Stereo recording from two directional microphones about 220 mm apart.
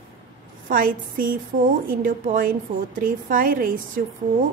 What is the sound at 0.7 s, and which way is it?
A woman's voice, 40° right (ahead or behind).